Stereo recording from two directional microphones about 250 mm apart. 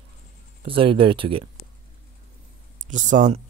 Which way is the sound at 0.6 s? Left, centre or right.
Right.